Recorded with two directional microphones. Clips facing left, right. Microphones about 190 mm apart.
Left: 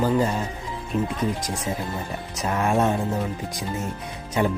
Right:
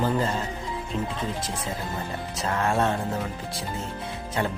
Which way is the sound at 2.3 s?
20° left (ahead or behind).